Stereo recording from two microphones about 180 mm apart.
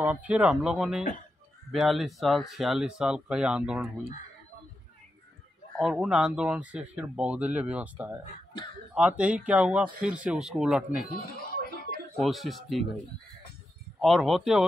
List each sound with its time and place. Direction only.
0.0 s speech: 5° right (ahead or behind)
5.8 s speech: centre (ahead or behind)
11.3 s a sound: 55° left (ahead or behind)
12.2 s speech: centre (ahead or behind)
14.0 s speech: centre (ahead or behind)